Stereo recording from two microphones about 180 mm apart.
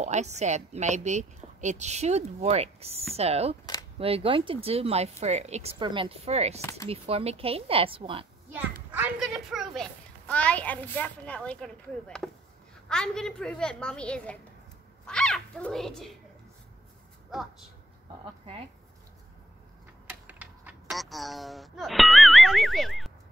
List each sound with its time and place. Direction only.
0.0 s a woman's voice: 40° right (ahead or behind)
8.9 s a woman's voice: 5° right (ahead or behind)
17.3 s a woman's voice: centre (ahead or behind)
20.1 s speech: 10° right (ahead or behind)